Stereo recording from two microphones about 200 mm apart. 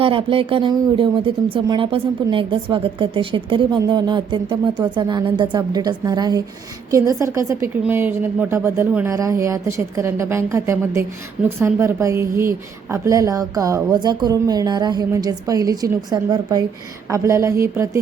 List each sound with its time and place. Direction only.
0.0 s a woman's voice: 25° right (ahead or behind)